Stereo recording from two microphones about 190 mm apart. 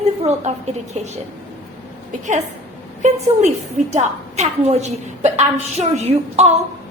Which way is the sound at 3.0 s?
35° right (ahead or behind).